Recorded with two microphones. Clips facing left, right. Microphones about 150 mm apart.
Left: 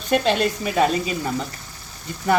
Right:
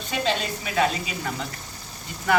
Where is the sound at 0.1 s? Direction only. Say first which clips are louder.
Left 7 dB; 55° left (ahead or behind).